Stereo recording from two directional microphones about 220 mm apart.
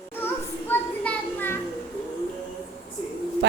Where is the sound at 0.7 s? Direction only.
10° left (ahead or behind).